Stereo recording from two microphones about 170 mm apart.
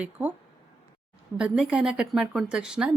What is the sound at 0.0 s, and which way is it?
Speech, 10° right (ahead or behind).